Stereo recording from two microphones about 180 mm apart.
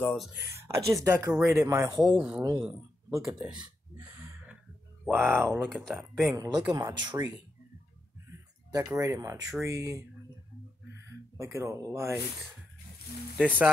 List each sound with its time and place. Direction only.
0.0 s speech: 5° left (ahead or behind)
0.3 s speech: 15° right (ahead or behind)
2.0 s speech: 5° right (ahead or behind)
3.2 s speech: 5° right (ahead or behind)
5.0 s speech: 5° left (ahead or behind)
6.2 s speech: 20° right (ahead or behind)
8.3 s speech: 15° right (ahead or behind)
11.3 s speech: 15° right (ahead or behind)